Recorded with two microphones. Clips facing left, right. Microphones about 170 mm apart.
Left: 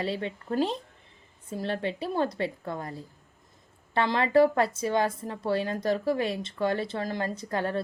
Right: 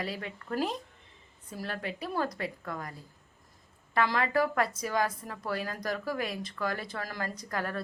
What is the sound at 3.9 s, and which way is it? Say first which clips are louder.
A woman's voice: left 6 dB; 25° left (ahead or behind).